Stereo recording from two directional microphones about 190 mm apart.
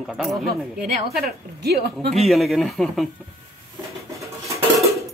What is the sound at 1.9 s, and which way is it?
Speech, centre (ahead or behind).